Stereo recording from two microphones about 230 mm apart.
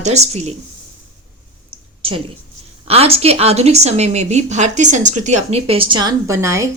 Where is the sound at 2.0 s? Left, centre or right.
Right.